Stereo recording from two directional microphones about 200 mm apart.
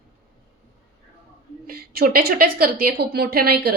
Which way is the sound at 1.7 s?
50° right (ahead or behind).